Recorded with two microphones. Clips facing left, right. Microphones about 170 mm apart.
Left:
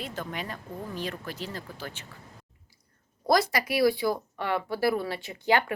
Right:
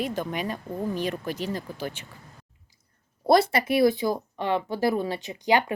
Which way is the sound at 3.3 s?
25° right (ahead or behind).